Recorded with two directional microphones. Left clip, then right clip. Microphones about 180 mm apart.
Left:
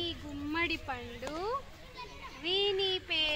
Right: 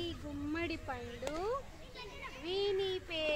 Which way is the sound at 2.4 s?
30° left (ahead or behind).